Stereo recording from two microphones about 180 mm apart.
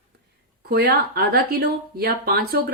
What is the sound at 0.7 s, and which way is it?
A woman's voice, 65° right (ahead or behind).